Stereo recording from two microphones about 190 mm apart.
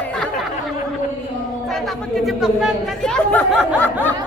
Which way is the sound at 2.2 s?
Centre (ahead or behind).